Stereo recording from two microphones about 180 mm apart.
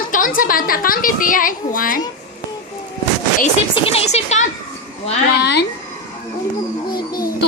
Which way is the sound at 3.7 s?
35° left (ahead or behind).